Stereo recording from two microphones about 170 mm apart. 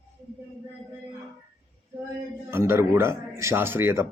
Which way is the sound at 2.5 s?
15° right (ahead or behind).